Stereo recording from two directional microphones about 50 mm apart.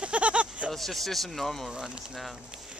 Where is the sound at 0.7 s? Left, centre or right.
Centre.